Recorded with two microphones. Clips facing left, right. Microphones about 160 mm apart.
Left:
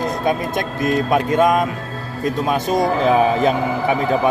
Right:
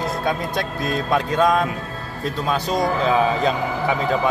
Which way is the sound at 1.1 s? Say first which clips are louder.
Left 1 dB; 15° left (ahead or behind).